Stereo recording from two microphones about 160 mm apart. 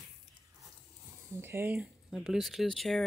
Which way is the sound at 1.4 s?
15° right (ahead or behind).